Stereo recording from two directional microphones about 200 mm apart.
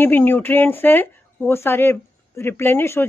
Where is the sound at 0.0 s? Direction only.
10° left (ahead or behind).